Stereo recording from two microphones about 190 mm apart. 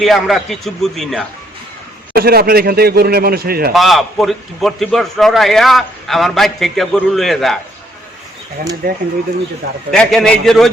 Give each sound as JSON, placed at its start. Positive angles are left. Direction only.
{"t": 0.0, "sound": "a man's voice", "side_deg": 0}
{"t": 2.1, "sound": "speech", "side_deg": -55}
{"t": 3.7, "sound": "a man's voice", "side_deg": 0}
{"t": 8.8, "sound": "speech", "side_deg": -55}
{"t": 9.9, "sound": "a man's voice", "side_deg": 0}